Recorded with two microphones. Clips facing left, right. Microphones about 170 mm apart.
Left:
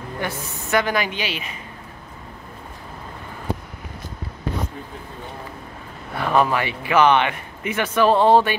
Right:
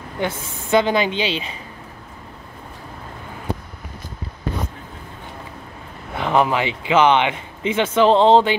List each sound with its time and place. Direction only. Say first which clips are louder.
0.2 s speech: right 5 dB; 25° right (ahead or behind)
6.1 s speech: right 1 dB; 20° right (ahead or behind)